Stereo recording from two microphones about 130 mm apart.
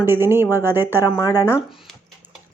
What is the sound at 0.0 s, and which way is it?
Speech, 15° right (ahead or behind).